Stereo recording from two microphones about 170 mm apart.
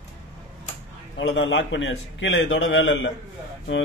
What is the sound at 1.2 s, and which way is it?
A man's voice, 90° left.